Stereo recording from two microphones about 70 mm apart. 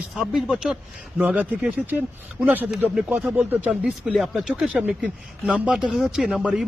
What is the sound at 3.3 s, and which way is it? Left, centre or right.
Speech, right.